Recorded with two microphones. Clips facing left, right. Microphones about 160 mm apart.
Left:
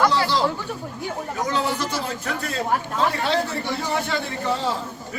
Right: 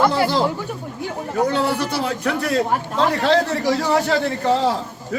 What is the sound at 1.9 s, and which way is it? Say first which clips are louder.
Speech: right 6 dB; 65° right (ahead or behind).